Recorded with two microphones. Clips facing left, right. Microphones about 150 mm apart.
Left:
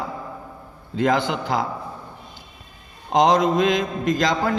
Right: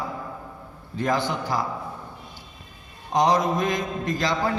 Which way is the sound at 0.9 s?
85° left.